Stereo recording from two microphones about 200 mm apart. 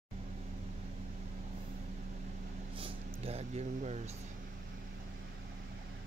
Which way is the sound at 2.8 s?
30° right (ahead or behind).